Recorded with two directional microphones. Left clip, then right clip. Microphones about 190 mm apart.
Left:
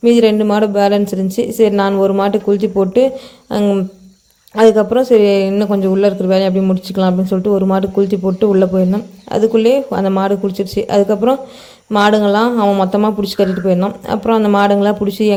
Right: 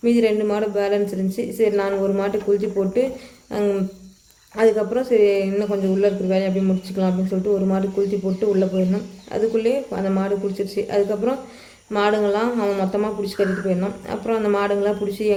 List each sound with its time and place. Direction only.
0.0 s speech: 35° left (ahead or behind)